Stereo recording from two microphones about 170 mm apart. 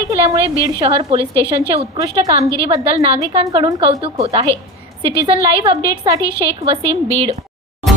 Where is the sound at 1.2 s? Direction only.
15° left (ahead or behind).